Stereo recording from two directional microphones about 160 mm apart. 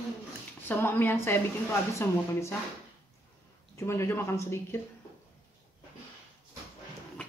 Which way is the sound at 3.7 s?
15° left (ahead or behind).